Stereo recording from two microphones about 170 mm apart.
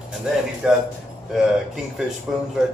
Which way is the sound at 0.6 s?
5° right (ahead or behind).